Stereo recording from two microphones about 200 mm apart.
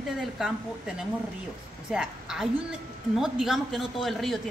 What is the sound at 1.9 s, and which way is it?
A woman's voice, 5° right (ahead or behind).